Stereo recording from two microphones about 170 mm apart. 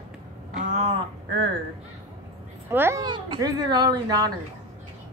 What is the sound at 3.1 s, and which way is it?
Speech, 25° right (ahead or behind).